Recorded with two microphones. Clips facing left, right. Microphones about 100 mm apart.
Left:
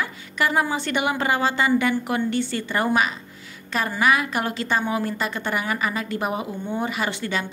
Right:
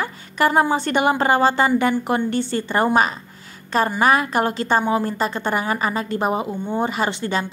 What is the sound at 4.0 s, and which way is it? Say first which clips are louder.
A woman's voice: right 2 dB; 40° right (ahead or behind).